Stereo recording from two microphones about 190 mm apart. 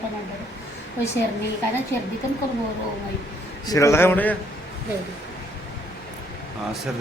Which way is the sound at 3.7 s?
15° left (ahead or behind).